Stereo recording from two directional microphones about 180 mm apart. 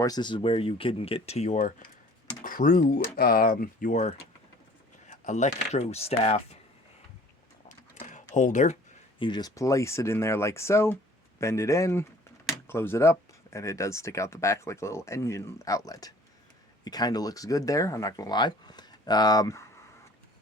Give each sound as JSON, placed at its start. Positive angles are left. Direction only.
{"t": 0.0, "sound": "speech", "side_deg": 25}
{"t": 7.7, "sound": "a sound", "side_deg": 45}
{"t": 8.4, "sound": "speech", "side_deg": 45}
{"t": 9.1, "sound": "speech", "side_deg": 25}